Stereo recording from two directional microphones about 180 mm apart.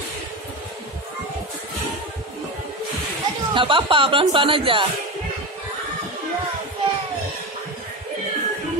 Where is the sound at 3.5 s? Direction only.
30° right (ahead or behind).